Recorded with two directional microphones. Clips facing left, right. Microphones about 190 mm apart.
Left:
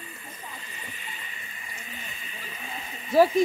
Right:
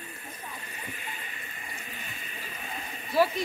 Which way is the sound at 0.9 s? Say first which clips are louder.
Right 2 dB; 50° right (ahead or behind).